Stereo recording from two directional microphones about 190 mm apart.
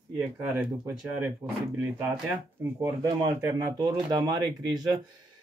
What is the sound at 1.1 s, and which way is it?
Speech, 5° right (ahead or behind).